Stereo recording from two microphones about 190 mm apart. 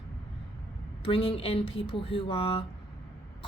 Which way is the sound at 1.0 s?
30° left (ahead or behind).